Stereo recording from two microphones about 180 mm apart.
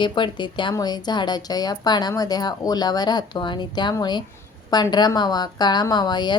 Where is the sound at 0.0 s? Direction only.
25° left (ahead or behind).